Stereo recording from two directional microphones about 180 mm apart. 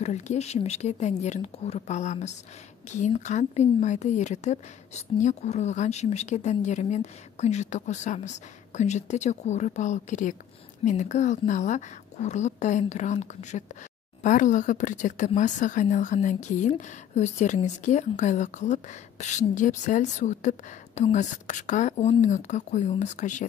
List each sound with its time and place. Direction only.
0.0 s a woman's voice: 40° left (ahead or behind)